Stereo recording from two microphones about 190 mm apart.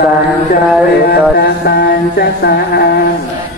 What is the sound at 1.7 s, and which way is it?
Music, 55° left (ahead or behind).